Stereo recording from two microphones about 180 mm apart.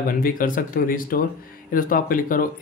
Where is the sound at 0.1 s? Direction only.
50° left (ahead or behind).